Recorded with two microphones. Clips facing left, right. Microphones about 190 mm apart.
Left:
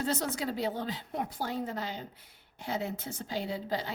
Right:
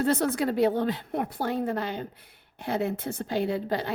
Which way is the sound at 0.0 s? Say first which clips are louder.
Right 8 dB; 60° right (ahead or behind).